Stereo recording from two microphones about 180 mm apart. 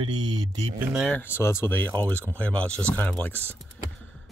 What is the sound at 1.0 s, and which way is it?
Speech, 10° left (ahead or behind).